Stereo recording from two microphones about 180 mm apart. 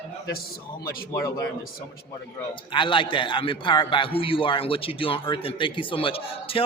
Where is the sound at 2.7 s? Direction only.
25° left (ahead or behind).